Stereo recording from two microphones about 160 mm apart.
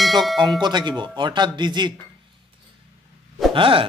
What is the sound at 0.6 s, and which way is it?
Speech, 25° right (ahead or behind).